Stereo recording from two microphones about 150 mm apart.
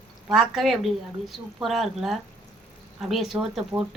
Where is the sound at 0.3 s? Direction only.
Centre (ahead or behind).